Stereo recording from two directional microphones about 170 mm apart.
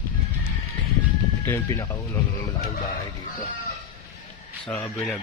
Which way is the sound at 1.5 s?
15° left (ahead or behind).